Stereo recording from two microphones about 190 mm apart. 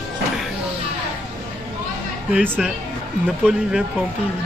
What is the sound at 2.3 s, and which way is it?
Speech, 10° right (ahead or behind).